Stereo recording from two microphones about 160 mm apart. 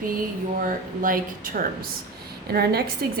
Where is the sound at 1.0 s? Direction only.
60° right (ahead or behind).